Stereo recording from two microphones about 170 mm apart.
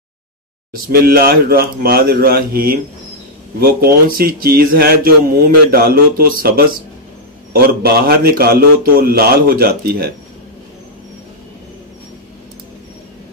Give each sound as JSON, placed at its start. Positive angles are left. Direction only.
{"t": 1.0, "sound": "speech", "side_deg": -60}